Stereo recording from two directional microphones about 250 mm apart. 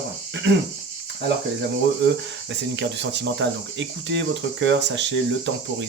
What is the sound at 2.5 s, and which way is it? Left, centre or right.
Speech, right.